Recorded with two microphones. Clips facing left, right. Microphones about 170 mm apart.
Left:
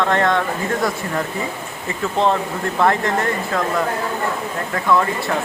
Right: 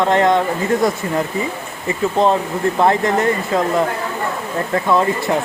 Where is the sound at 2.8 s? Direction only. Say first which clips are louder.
Right 2 dB; 20° right (ahead or behind).